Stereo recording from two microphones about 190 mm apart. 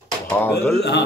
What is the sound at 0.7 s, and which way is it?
Speech, 60° left (ahead or behind).